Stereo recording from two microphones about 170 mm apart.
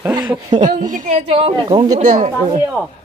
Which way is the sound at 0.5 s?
45° right (ahead or behind).